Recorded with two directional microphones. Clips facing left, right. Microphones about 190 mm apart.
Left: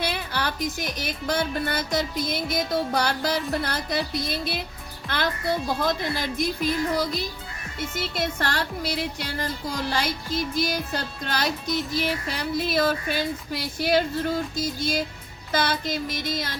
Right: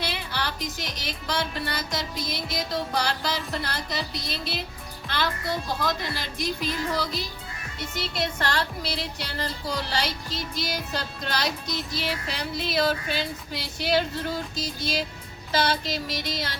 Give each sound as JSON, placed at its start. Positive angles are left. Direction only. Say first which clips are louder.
{"t": 0.0, "sound": "music", "louder": "left 3 dB", "side_deg": 50}